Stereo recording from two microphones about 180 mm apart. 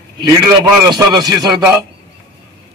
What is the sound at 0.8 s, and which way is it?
Speech, 25° right (ahead or behind).